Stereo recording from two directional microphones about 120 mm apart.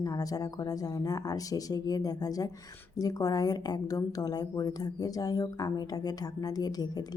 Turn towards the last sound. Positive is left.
turn(degrees=30)  # may be behind; listen again after turning